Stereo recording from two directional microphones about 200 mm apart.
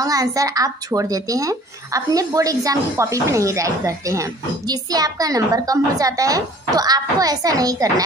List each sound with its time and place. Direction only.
0.0 s a woman's voice: 15° right (ahead or behind)